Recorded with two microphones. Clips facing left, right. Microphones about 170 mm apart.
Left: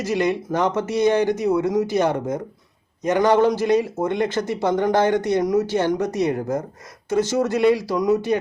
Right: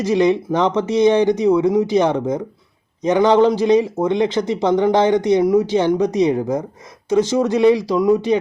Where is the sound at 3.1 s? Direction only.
20° right (ahead or behind).